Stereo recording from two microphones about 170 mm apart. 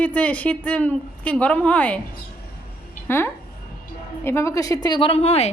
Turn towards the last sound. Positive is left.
turn(degrees=40)  # may be behind; listen again after turning